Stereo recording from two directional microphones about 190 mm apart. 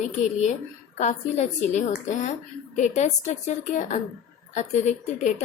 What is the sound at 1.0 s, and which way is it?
A woman's voice, 35° left (ahead or behind).